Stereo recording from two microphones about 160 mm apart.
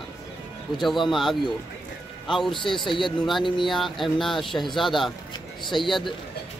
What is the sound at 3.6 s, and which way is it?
Speech, centre (ahead or behind).